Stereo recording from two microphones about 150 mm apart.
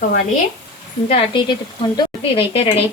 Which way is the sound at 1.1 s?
35° left (ahead or behind).